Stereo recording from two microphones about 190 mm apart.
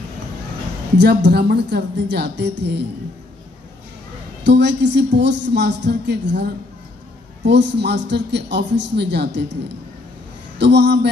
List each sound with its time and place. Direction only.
0.9 s a woman's voice: 60° right (ahead or behind)
4.5 s a woman's voice: 65° right (ahead or behind)
7.4 s a woman's voice: 65° right (ahead or behind)
10.6 s a woman's voice: 65° right (ahead or behind)